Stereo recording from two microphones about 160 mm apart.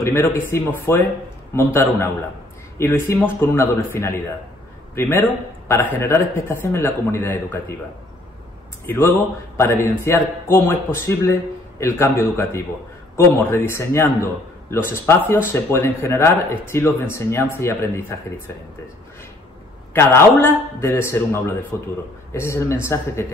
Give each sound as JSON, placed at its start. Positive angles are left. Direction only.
{"t": 0.0, "sound": "a man's voice", "side_deg": 15}
{"t": 8.8, "sound": "speech", "side_deg": 15}
{"t": 19.9, "sound": "speech", "side_deg": 15}